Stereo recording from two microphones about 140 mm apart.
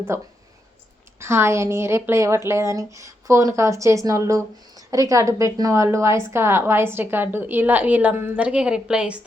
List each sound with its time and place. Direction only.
0.1 s a woman's voice: 20° right (ahead or behind)